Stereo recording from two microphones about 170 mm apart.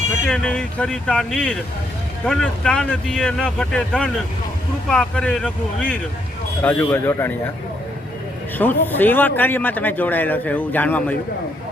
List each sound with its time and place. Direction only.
0.3 s a man's voice: 5° left (ahead or behind)
8.5 s a man's voice: 10° left (ahead or behind)